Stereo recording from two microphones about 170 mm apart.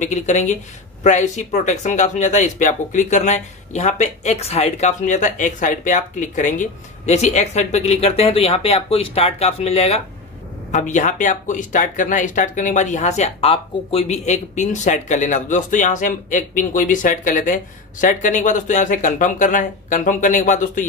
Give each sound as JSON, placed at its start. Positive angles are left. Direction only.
{"t": 0.0, "sound": "speech", "side_deg": 45}